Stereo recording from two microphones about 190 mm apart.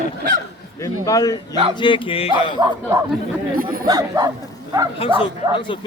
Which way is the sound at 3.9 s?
20° right (ahead or behind).